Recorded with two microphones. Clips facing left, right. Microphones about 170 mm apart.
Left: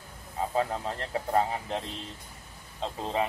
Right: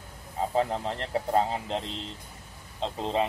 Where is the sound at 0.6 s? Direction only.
20° right (ahead or behind).